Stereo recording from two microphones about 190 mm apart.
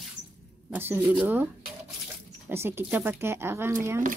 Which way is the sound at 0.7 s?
10° right (ahead or behind).